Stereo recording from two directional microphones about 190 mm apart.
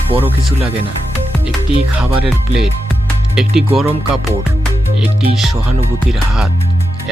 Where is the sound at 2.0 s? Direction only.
Centre (ahead or behind).